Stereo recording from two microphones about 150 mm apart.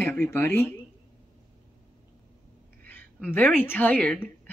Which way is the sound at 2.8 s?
10° left (ahead or behind).